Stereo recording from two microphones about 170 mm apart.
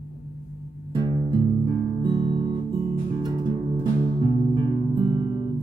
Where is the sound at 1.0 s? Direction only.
25° right (ahead or behind).